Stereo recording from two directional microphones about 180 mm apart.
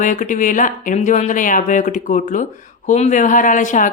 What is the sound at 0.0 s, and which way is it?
Speech, 45° left (ahead or behind).